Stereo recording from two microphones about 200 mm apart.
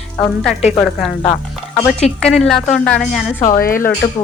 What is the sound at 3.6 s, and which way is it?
Speech, 45° left (ahead or behind).